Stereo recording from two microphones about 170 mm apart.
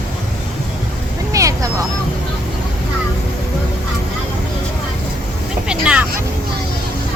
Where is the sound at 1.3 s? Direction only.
20° right (ahead or behind).